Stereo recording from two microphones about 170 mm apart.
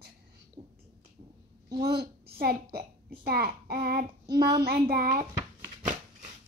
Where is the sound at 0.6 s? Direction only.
45° right (ahead or behind).